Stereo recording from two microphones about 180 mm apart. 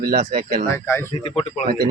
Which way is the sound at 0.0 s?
50° right (ahead or behind).